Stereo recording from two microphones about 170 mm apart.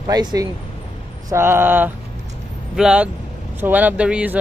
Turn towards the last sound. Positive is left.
turn(degrees=-5)  # may be behind; listen again after turning